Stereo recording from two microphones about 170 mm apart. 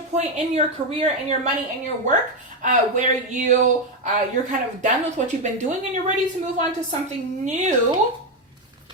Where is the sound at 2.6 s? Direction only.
45° right (ahead or behind).